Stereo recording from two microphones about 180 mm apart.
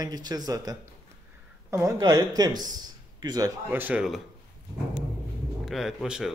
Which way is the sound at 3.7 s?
10° right (ahead or behind).